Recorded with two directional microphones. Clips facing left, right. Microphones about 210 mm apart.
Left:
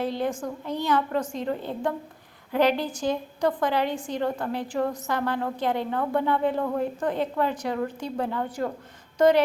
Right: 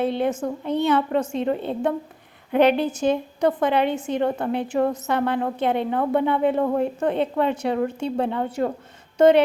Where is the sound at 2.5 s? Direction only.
25° right (ahead or behind).